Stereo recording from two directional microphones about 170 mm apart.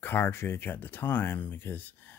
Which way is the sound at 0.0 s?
10° left (ahead or behind).